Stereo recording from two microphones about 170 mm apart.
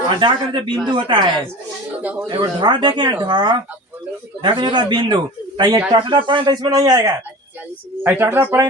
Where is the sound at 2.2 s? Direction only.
25° right (ahead or behind).